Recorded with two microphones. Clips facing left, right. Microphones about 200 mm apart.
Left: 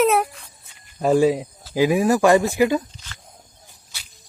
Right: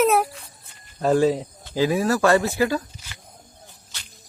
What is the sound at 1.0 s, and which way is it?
Speech, 10° left (ahead or behind).